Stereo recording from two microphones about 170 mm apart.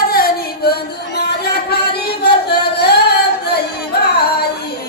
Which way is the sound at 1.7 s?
75° left (ahead or behind).